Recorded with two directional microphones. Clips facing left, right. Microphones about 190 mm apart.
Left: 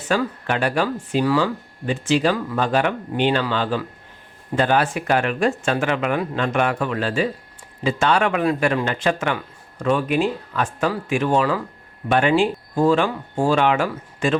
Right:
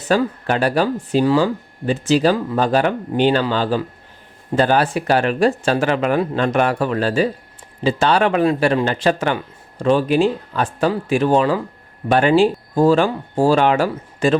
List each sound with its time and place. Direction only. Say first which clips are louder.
0.1 s speech: right 4 dB; 35° right (ahead or behind)